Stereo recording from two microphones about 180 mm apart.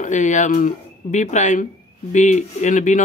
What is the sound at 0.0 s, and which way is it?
Speech, 45° left (ahead or behind).